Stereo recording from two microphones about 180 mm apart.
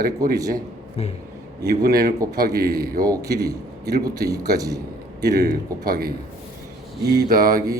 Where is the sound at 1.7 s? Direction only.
60° right (ahead or behind).